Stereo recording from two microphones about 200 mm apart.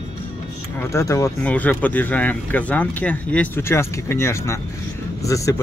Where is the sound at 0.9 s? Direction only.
15° left (ahead or behind).